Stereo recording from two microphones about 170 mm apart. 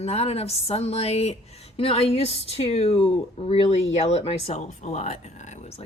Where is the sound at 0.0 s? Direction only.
35° left (ahead or behind).